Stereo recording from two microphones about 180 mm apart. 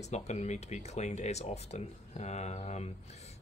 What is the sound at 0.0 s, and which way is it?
Speech, 40° left (ahead or behind).